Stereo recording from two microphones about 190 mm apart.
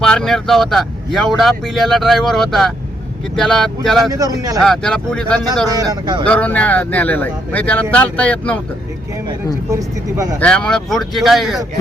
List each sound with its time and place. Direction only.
0.0 s speech: 5° left (ahead or behind)
4.1 s a man's voice: 20° right (ahead or behind)
4.6 s speech: 5° left (ahead or behind)
5.6 s a man's voice: 20° right (ahead or behind)
6.2 s speech: 5° left (ahead or behind)
9.7 s speech: 15° right (ahead or behind)
10.4 s speech: 5° left (ahead or behind)